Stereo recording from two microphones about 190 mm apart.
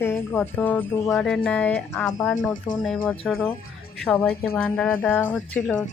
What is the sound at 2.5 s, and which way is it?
Speech, 45° left (ahead or behind).